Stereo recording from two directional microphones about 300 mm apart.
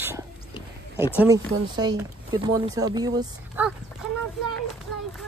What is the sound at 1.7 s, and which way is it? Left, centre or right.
Speech, centre.